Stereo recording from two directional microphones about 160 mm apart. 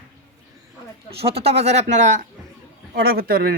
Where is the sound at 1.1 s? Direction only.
40° right (ahead or behind).